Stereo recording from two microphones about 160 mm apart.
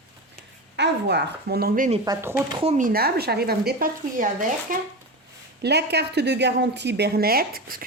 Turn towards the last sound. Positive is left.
turn(degrees=-65)  # may be behind; listen again after turning